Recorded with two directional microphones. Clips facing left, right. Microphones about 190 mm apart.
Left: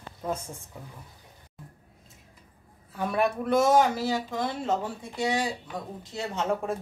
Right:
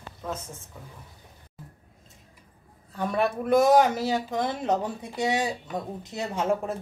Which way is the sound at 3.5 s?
15° right (ahead or behind).